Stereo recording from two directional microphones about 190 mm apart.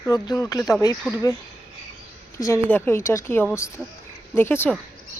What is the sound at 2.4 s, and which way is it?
Speech, 15° left (ahead or behind).